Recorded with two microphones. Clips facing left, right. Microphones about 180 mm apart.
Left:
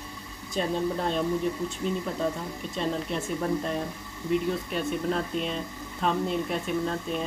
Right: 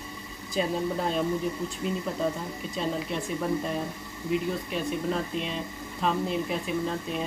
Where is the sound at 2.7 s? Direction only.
Centre (ahead or behind).